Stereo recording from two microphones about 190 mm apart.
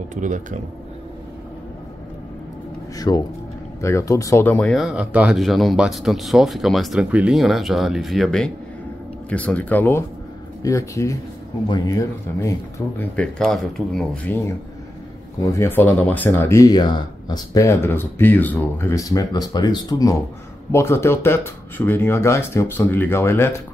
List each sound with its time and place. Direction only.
0.1 s speech: 40° right (ahead or behind)
3.0 s speech: 20° left (ahead or behind)